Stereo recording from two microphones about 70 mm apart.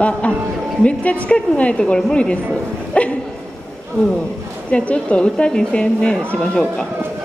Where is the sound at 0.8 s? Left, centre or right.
Centre.